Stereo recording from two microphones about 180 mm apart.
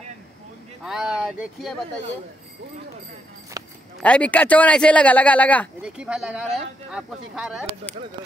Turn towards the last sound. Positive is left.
turn(degrees=0)  # may be behind; listen again after turning